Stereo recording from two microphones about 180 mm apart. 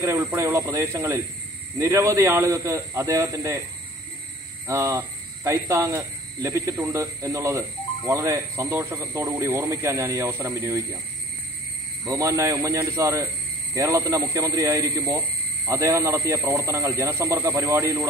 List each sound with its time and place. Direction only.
0.0 s a man's voice: 15° right (ahead or behind)
4.6 s a man's voice: 15° right (ahead or behind)
12.0 s a man's voice: 15° right (ahead or behind)